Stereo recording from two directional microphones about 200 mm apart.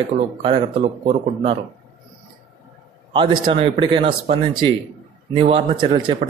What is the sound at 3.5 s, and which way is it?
Speech, 25° right (ahead or behind).